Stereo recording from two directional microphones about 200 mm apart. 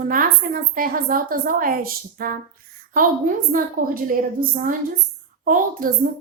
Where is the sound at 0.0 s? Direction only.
45° right (ahead or behind).